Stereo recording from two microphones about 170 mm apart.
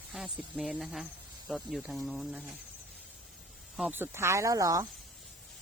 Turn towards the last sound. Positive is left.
turn(degrees=-20)  # may be behind; listen again after turning